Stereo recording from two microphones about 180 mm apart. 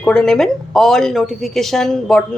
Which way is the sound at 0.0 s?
5° left (ahead or behind).